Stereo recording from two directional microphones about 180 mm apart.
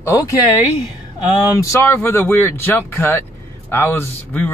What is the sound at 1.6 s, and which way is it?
A man's voice, 15° left (ahead or behind).